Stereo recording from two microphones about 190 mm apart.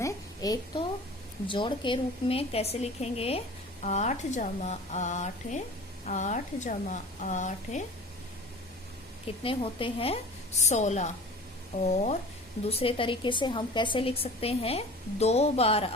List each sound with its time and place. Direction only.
0.0 s a sound: 20° left (ahead or behind)
1.5 s speech: 25° left (ahead or behind)
9.4 s a woman's voice: 30° left (ahead or behind)
12.6 s a woman's voice: 30° left (ahead or behind)